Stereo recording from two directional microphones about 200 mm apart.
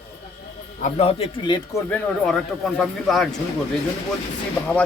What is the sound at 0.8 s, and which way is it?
Speech, 30° left (ahead or behind).